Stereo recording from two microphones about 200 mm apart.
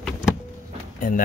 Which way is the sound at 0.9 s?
40° left (ahead or behind).